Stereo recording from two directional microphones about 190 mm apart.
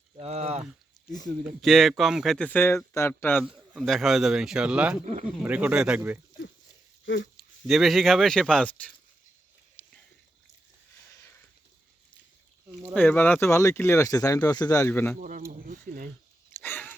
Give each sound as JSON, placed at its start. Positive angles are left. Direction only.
{"t": 0.2, "sound": "a sound", "side_deg": -35}
{"t": 1.6, "sound": "speech", "side_deg": 0}
{"t": 3.4, "sound": "speech", "side_deg": 0}
{"t": 7.0, "sound": "speech", "side_deg": 70}
{"t": 7.7, "sound": "speech", "side_deg": 0}
{"t": 12.9, "sound": "speech", "side_deg": 10}
{"t": 15.2, "sound": "speech", "side_deg": -45}
{"t": 15.5, "sound": "a sound", "side_deg": -50}
{"t": 16.5, "sound": "a sound", "side_deg": 10}